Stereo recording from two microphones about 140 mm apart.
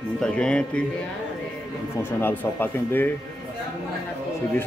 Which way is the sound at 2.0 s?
15° left (ahead or behind).